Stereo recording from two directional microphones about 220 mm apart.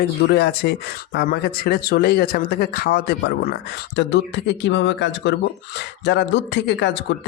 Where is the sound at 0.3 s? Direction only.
50° left (ahead or behind).